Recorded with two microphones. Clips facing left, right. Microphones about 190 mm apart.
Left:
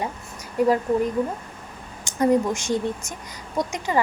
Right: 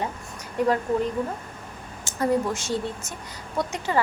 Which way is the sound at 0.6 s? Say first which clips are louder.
Left 3 dB; 10° left (ahead or behind).